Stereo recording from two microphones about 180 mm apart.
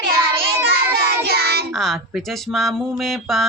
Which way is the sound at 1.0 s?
60° right (ahead or behind).